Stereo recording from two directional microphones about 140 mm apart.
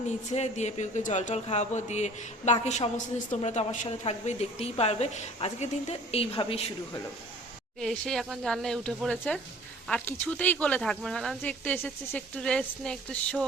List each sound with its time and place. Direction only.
0.3 s a woman's voice: 55° left (ahead or behind)
7.8 s speech: 5° left (ahead or behind)